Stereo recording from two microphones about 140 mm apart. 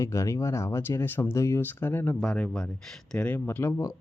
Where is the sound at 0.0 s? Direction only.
20° left (ahead or behind).